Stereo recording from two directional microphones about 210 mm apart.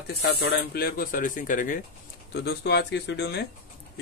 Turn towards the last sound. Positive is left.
turn(degrees=55)  # may be behind; listen again after turning